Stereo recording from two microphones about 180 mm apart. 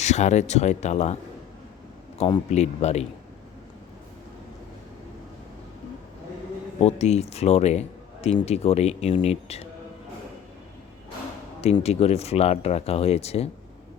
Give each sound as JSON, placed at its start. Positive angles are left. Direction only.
{"t": 0.0, "sound": "speech", "side_deg": 40}
{"t": 2.1, "sound": "speech", "side_deg": 35}
{"t": 6.7, "sound": "speech", "side_deg": 35}
{"t": 11.6, "sound": "speech", "side_deg": 35}